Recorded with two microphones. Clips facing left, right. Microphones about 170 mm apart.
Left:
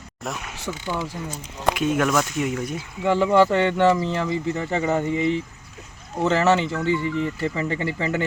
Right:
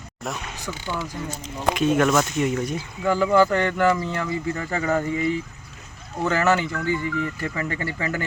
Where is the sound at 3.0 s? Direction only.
25° left (ahead or behind).